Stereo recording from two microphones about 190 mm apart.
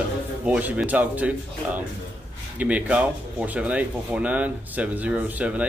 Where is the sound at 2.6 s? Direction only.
5° right (ahead or behind).